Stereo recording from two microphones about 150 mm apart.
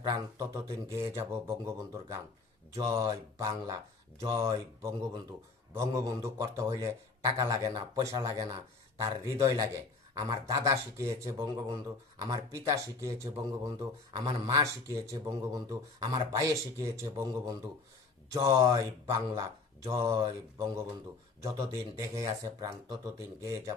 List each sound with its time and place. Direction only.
0.1 s speech: 20° right (ahead or behind)